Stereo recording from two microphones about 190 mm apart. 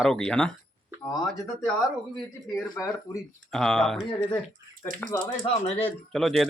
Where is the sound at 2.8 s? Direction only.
10° left (ahead or behind).